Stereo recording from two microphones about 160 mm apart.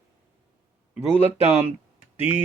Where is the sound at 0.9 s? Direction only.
10° right (ahead or behind).